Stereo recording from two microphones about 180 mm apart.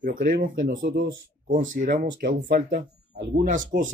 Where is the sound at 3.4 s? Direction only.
45° right (ahead or behind).